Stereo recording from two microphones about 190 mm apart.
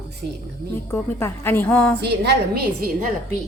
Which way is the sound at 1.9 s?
60° right (ahead or behind).